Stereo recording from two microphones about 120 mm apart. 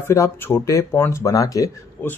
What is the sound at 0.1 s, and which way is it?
Speech, 20° left (ahead or behind).